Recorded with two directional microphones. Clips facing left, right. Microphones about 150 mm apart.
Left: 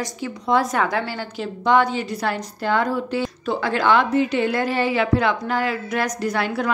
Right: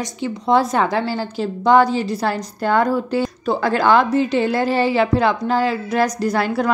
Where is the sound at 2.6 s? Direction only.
45° right (ahead or behind).